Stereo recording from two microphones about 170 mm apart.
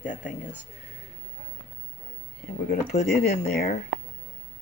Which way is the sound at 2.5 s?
55° left (ahead or behind).